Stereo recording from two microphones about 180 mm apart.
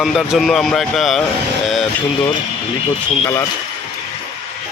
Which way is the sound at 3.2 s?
15° left (ahead or behind).